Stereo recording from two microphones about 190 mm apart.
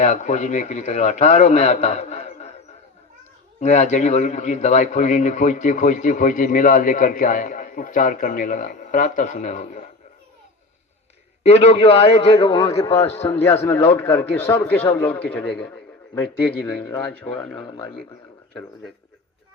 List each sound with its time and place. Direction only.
0.0 s a man's voice: 35° left (ahead or behind)
3.6 s a man's voice: 35° left (ahead or behind)
11.4 s a man's voice: 30° left (ahead or behind); by 15.8 s 5° left (ahead or behind)
17.2 s speech: 5° left (ahead or behind)